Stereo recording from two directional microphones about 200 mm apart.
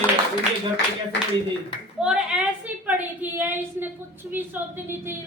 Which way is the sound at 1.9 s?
5° right (ahead or behind).